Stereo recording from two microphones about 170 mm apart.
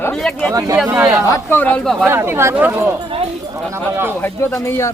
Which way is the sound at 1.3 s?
10° left (ahead or behind).